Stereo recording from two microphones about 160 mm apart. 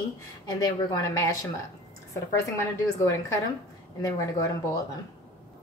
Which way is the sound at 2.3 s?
20° left (ahead or behind).